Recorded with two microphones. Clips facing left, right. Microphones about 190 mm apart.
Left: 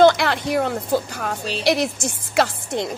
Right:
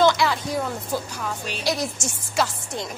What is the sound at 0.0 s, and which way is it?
A woman's voice, 55° left (ahead or behind).